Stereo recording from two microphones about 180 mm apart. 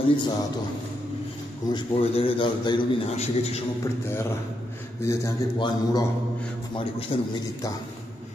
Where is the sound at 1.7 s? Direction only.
30° left (ahead or behind).